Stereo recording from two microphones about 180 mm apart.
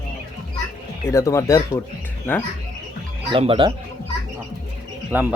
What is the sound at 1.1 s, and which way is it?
Speech, 15° left (ahead or behind).